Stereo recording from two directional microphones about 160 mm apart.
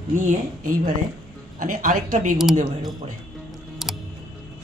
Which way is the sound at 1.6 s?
55° right (ahead or behind).